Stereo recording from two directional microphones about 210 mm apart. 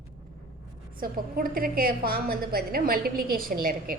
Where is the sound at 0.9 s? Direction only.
45° right (ahead or behind).